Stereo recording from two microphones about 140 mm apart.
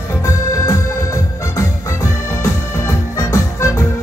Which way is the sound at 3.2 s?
20° left (ahead or behind).